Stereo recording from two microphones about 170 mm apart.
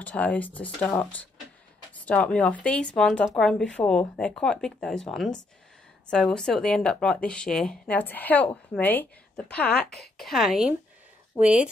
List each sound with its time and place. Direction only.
0.0 s speech: 10° left (ahead or behind); by 11.7 s 10° right (ahead or behind)